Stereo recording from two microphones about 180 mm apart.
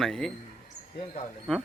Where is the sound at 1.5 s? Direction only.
5° left (ahead or behind).